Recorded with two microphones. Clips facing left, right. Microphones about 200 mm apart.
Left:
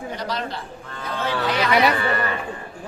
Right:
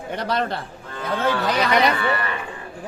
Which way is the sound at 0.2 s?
60° right (ahead or behind).